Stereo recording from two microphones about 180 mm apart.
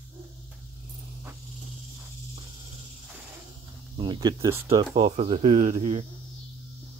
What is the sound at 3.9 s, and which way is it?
Speech, 25° right (ahead or behind).